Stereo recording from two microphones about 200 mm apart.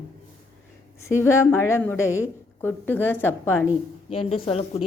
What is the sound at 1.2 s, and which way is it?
A woman's voice, 10° left (ahead or behind).